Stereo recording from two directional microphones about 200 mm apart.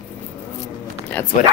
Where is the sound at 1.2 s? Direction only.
10° left (ahead or behind).